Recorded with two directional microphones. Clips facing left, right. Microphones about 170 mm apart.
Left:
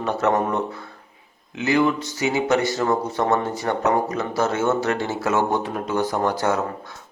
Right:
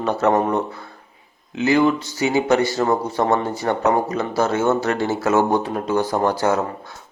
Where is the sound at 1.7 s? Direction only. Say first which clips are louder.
Right 2 dB; 35° right (ahead or behind).